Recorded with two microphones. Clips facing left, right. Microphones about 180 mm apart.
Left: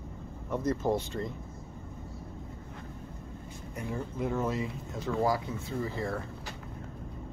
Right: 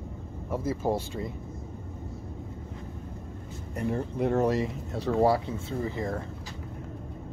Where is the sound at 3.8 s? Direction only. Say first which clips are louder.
Right 6 dB; 60° right (ahead or behind).